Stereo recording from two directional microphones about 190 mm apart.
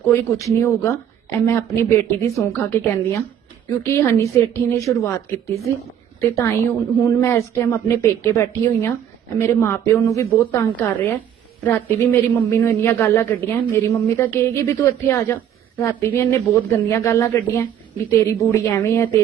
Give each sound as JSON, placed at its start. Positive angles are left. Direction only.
{"t": 0.0, "sound": "a man's voice", "side_deg": 15}